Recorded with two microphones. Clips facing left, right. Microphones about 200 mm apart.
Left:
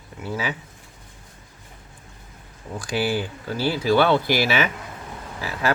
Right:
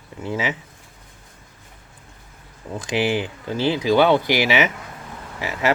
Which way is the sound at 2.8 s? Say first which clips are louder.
Right 2 dB; 20° right (ahead or behind).